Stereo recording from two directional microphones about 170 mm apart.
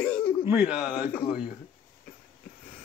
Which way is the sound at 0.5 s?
5° right (ahead or behind).